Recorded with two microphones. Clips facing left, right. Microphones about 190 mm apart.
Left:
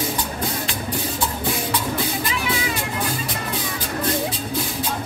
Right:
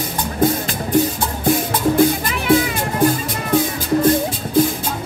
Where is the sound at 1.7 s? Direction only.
50° right (ahead or behind).